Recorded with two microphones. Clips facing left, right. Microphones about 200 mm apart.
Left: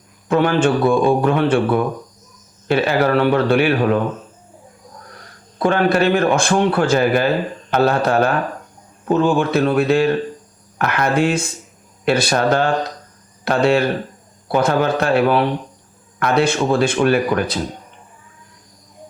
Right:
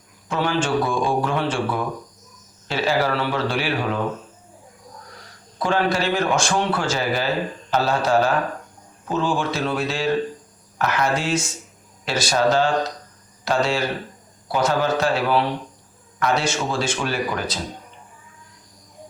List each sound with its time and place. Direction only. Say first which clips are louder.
0.3 s a man's voice: left 7 dB; 60° left (ahead or behind)
5.1 s a man's voice: left 3 dB; 55° left (ahead or behind)